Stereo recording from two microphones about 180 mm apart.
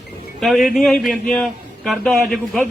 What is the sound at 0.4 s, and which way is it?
A man's voice, centre (ahead or behind).